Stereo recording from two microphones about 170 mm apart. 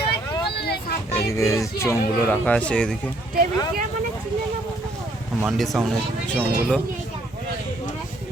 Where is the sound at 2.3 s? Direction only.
5° left (ahead or behind).